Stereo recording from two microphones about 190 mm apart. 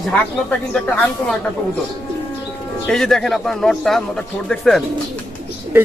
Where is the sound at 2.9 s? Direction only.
5° left (ahead or behind).